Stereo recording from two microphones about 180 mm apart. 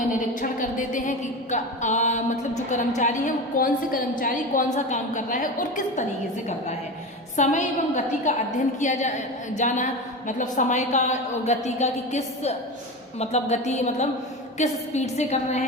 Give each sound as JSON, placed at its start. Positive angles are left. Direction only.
{"t": 0.3, "sound": "a woman's voice", "side_deg": 45}
{"t": 7.3, "sound": "a woman's voice", "side_deg": 40}